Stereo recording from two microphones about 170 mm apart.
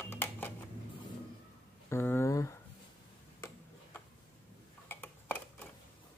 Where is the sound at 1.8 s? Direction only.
15° left (ahead or behind).